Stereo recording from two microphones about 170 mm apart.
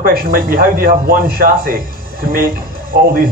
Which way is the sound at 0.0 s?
60° right (ahead or behind).